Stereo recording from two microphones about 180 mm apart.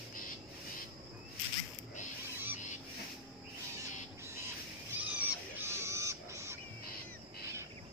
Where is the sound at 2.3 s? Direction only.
10° right (ahead or behind).